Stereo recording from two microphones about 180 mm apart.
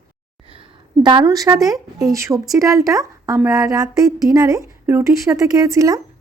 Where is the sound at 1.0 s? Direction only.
25° right (ahead or behind).